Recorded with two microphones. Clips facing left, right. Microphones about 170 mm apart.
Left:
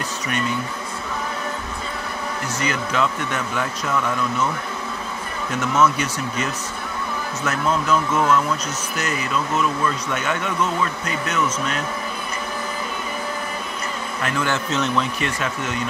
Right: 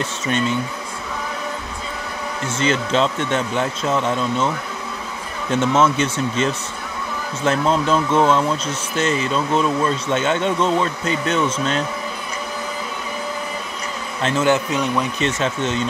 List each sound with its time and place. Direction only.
2.4 s speech: 25° right (ahead or behind)
5.5 s speech: 25° right (ahead or behind)
14.2 s speech: 20° right (ahead or behind)